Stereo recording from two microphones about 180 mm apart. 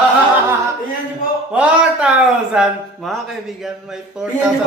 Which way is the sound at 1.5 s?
5° right (ahead or behind).